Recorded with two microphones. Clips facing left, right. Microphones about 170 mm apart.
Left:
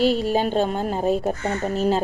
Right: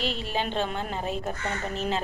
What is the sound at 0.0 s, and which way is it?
A woman's voice, 40° left (ahead or behind).